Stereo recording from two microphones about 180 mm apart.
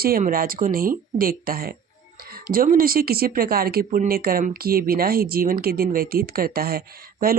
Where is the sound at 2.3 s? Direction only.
55° right (ahead or behind).